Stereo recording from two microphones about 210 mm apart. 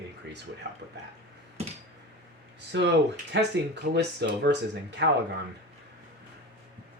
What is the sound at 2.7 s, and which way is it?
Speech, 60° right (ahead or behind).